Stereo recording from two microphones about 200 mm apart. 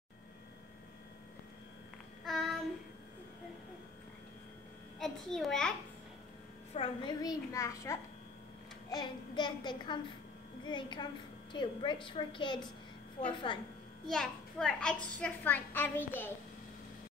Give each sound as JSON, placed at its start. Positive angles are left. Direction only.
{"t": 2.2, "sound": "child singing", "side_deg": 0}
{"t": 4.9, "sound": "a child's voice", "side_deg": 0}
{"t": 6.7, "sound": "a child's voice", "side_deg": 25}
{"t": 14.0, "sound": "a child's voice", "side_deg": 5}